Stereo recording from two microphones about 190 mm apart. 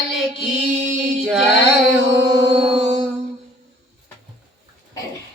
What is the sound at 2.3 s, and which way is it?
Music, 30° right (ahead or behind).